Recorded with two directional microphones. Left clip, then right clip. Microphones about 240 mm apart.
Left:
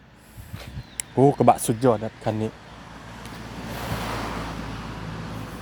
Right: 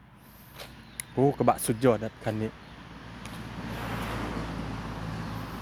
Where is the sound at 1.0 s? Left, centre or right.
Centre.